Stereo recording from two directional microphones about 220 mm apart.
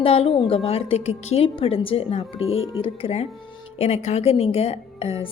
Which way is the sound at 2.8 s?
25° left (ahead or behind).